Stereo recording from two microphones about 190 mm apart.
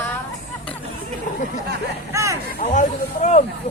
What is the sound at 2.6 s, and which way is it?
Speech, 40° left (ahead or behind).